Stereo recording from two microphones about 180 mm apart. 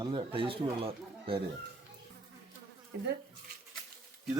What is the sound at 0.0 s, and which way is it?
A man's voice, 25° right (ahead or behind).